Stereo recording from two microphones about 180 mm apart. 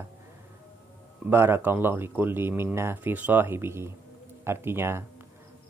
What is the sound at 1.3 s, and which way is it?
Speech, 10° right (ahead or behind).